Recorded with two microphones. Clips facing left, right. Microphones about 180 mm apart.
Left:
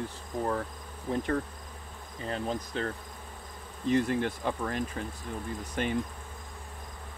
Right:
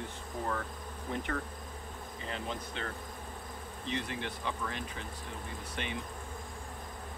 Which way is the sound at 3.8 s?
45° left (ahead or behind).